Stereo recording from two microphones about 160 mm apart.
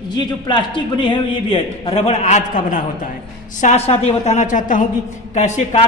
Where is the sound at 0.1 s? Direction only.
30° left (ahead or behind).